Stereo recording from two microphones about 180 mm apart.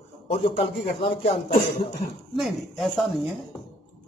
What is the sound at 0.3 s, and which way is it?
Speech, 30° left (ahead or behind).